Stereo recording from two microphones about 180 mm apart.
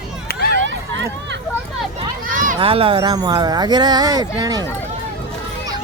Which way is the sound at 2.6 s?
30° right (ahead or behind).